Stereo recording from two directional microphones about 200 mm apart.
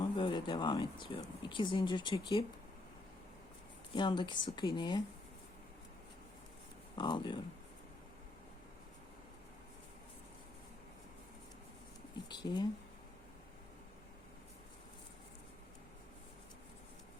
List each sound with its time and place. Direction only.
0.0 s speech: 25° left (ahead or behind)
3.9 s speech: 25° left (ahead or behind)
6.9 s speech: 20° left (ahead or behind)
12.3 s speech: 20° left (ahead or behind)